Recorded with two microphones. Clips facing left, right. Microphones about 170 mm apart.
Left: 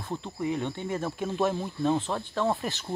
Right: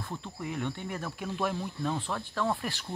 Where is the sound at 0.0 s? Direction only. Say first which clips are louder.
Left 6 dB; 25° left (ahead or behind).